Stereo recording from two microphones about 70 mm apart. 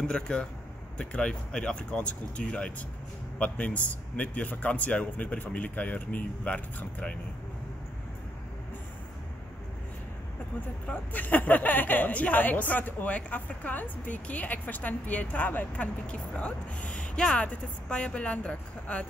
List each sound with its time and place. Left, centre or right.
0.0 s speech: centre
10.9 s speech: left